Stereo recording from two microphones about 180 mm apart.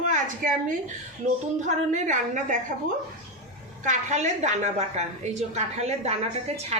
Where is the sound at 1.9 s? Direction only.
45° right (ahead or behind).